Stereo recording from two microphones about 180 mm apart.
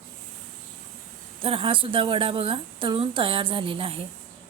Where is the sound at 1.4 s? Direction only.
30° right (ahead or behind).